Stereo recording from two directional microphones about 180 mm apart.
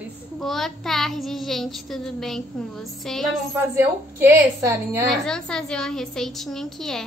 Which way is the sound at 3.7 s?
15° right (ahead or behind).